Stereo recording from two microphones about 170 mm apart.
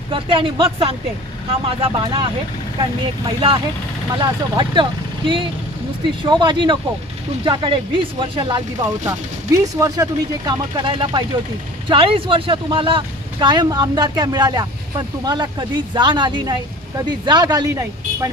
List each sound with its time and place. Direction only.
0.1 s speech: 30° right (ahead or behind)
3.2 s speech: 30° right (ahead or behind)